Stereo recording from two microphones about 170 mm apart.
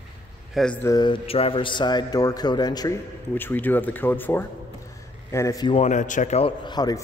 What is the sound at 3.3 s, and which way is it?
A man's voice, 10° left (ahead or behind).